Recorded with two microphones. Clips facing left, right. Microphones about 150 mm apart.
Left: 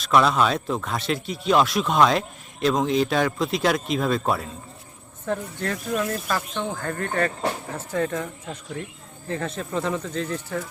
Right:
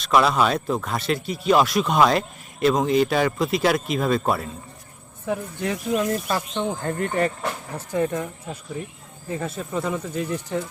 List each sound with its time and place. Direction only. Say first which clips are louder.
0.0 s speech: even; centre (ahead or behind)
5.2 s speech: right 1 dB; 15° right (ahead or behind)